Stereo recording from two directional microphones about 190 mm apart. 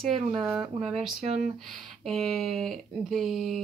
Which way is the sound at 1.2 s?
35° right (ahead or behind).